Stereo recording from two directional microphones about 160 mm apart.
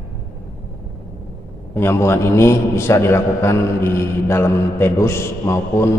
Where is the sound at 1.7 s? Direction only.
15° left (ahead or behind).